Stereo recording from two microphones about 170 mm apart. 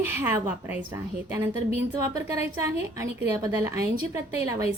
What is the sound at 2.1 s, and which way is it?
A woman's voice, 20° right (ahead or behind).